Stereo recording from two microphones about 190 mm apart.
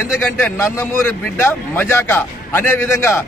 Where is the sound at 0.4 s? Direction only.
15° left (ahead or behind).